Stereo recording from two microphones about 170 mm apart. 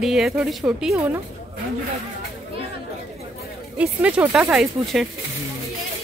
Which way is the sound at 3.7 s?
5° right (ahead or behind).